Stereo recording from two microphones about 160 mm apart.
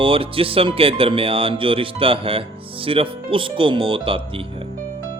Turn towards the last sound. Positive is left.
turn(degrees=-35)  # may be behind; listen again after turning